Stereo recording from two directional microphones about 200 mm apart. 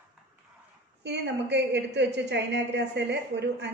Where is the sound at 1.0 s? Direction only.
60° right (ahead or behind).